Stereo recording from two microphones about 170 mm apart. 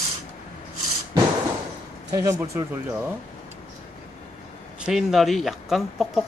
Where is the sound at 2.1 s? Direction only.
20° right (ahead or behind).